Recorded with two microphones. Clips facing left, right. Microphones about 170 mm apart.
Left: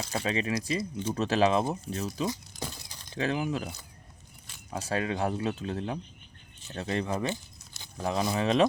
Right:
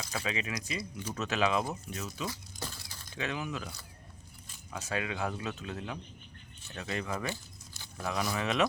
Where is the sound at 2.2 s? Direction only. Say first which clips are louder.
Left 6 dB; 15° left (ahead or behind).